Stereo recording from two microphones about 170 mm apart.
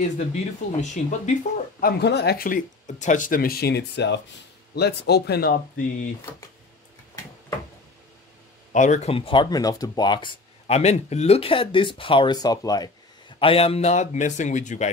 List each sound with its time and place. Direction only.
0.3 s a man's voice: 45° left (ahead or behind)
1.8 s speech: 65° left (ahead or behind); by 4.2 s 85° left
4.7 s speech: 75° left (ahead or behind)
8.7 s speech: 45° left (ahead or behind); by 10.3 s 25° left (ahead or behind)
10.7 s speech: 40° left (ahead or behind); by 12.9 s 25° left (ahead or behind)
13.4 s a man's voice: 35° left (ahead or behind)